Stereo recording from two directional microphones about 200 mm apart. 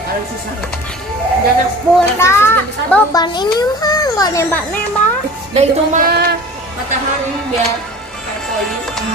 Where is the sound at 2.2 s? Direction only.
10° left (ahead or behind).